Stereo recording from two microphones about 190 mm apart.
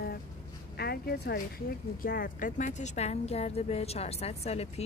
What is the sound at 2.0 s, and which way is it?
A woman's voice, 50° left (ahead or behind).